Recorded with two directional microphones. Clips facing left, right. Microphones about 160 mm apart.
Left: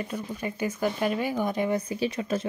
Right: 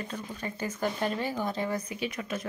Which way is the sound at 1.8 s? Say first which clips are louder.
Left 6 dB; 35° left (ahead or behind).